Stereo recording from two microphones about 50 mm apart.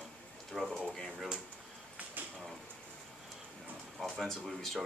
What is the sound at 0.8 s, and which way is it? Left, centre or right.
Speech, centre.